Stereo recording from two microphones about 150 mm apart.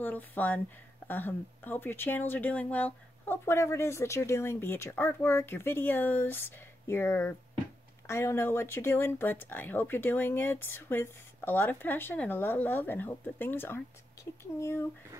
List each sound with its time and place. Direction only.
0.0 s speech: 10° left (ahead or behind)